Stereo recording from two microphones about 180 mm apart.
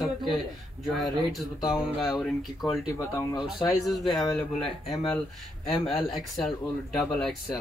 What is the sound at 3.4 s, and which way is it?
Speech, centre (ahead or behind).